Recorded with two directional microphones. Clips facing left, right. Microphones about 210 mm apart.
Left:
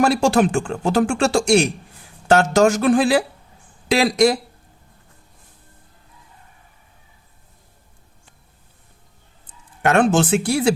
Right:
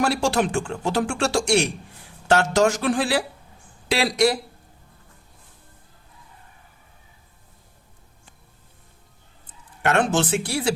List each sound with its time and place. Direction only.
0.0 s speech: 50° left (ahead or behind)
9.8 s speech: 50° left (ahead or behind)